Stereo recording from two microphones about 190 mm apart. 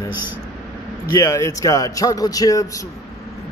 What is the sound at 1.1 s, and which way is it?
Speech, 20° left (ahead or behind).